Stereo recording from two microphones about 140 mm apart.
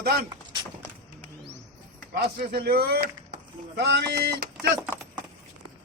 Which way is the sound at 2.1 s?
90° right.